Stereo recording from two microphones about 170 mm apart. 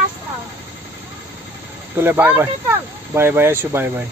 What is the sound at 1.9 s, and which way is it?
Speech, 10° right (ahead or behind).